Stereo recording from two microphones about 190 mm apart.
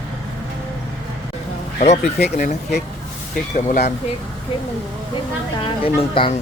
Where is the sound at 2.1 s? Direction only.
60° left (ahead or behind).